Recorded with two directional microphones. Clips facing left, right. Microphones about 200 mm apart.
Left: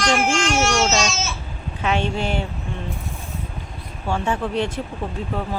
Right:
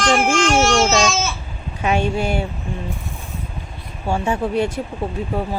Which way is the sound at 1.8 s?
10° right (ahead or behind).